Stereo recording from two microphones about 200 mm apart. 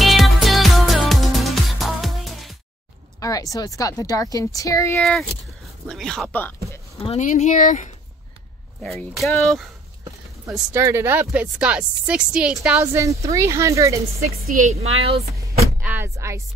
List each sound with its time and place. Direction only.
0.0 s music: centre (ahead or behind)
3.2 s a woman's voice: 15° left (ahead or behind)
4.9 s speech: 5° left (ahead or behind)
7.0 s speech: 35° left (ahead or behind)
9.1 s speech: centre (ahead or behind)
10.7 s speech: 15° right (ahead or behind)
14.7 s speech: 30° right (ahead or behind)
15.5 s speech: 10° right (ahead or behind)